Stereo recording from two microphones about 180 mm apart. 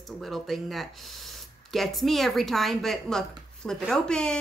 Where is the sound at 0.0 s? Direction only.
Centre (ahead or behind).